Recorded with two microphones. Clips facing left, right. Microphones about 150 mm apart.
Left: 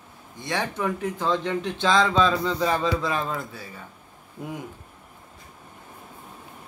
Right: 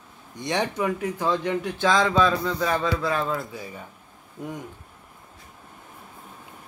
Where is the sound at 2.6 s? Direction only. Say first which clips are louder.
Left 1 dB; 25° left (ahead or behind).